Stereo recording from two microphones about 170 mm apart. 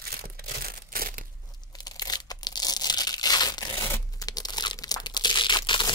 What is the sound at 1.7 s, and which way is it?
Tearing, 25° left (ahead or behind).